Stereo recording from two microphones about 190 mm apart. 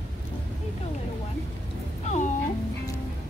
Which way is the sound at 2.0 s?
40° left (ahead or behind).